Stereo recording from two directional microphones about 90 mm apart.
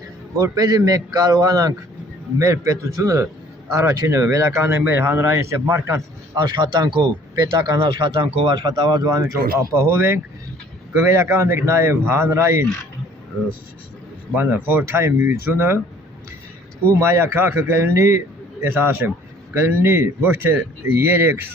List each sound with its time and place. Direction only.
0.5 s a man's voice: 45° right (ahead or behind)
6.3 s speech: 60° right (ahead or behind)
7.9 s speech: 60° right (ahead or behind)
8.8 s a man's voice: 50° right (ahead or behind); by 12.6 s 35° right (ahead or behind)
14.3 s speech: 20° right (ahead or behind)
17.0 s speech: 30° right (ahead or behind)